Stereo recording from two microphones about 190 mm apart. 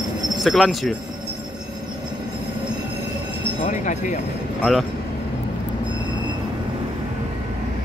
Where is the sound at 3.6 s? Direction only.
40° left (ahead or behind).